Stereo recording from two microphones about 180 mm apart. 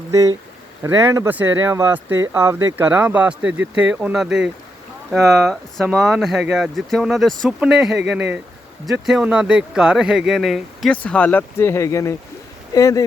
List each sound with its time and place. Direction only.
0.1 s speech: 20° right (ahead or behind); by 13.1 s 20° left (ahead or behind)